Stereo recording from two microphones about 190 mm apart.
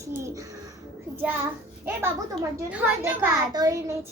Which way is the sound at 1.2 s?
10° right (ahead or behind).